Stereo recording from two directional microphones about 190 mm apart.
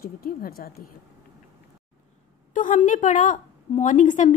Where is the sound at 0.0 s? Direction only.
50° left (ahead or behind).